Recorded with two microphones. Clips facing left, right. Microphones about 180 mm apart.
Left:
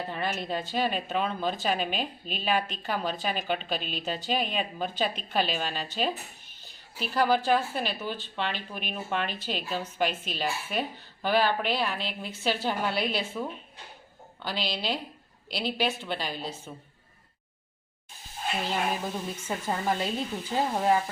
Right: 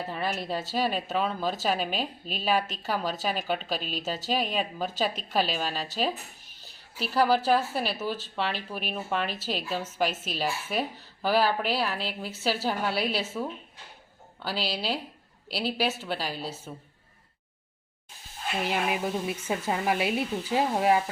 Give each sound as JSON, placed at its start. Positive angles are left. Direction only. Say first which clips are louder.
{"t": 0.0, "sound": "a woman's voice", "louder": "even", "side_deg": 0}
{"t": 6.6, "sound": "a sound", "louder": "right 1 dB", "side_deg": -35}
{"t": 7.1, "sound": "a woman's voice", "louder": "right 1 dB", "side_deg": -5}
{"t": 18.6, "sound": "speech", "louder": "right 3 dB", "side_deg": -10}